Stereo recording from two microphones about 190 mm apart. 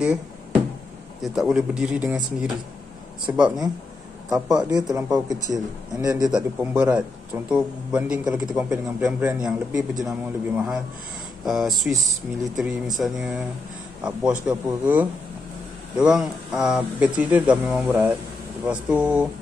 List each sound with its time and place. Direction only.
1.2 s a man's voice: centre (ahead or behind)
4.3 s a man's voice: 20° right (ahead or behind)
6.2 s a man's voice: 5° right (ahead or behind)